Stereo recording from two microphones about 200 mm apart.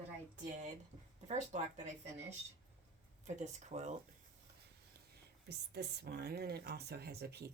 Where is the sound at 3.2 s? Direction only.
35° right (ahead or behind).